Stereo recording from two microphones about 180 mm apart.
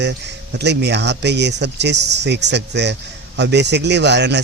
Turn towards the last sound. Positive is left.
turn(degrees=-70)  # may be behind; listen again after turning